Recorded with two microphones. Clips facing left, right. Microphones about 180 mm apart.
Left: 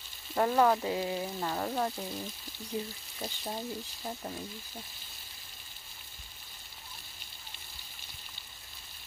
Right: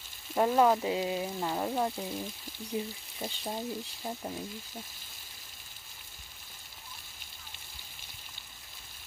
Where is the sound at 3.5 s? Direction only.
20° right (ahead or behind).